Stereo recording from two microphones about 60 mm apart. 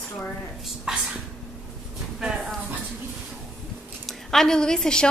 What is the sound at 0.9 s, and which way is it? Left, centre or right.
Speech, centre.